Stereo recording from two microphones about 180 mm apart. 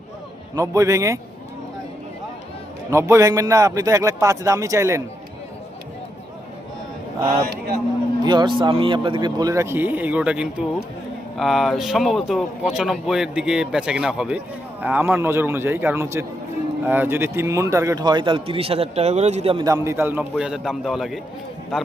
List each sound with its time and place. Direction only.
0.5 s a man's voice: 20° right (ahead or behind)
2.9 s a man's voice: 15° right (ahead or behind)
8.2 s a man's voice: 25° right (ahead or behind)
19.6 s speech: 15° right (ahead or behind)